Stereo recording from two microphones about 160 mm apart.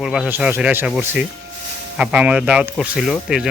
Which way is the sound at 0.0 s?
5° right (ahead or behind).